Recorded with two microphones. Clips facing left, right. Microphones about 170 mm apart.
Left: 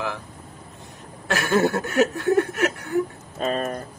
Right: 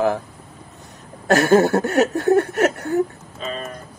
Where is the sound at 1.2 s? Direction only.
40° right (ahead or behind).